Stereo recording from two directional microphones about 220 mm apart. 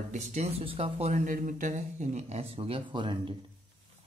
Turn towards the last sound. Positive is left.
turn(degrees=-20)  # may be behind; listen again after turning